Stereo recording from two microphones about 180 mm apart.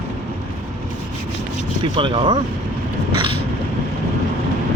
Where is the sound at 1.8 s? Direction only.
30° right (ahead or behind).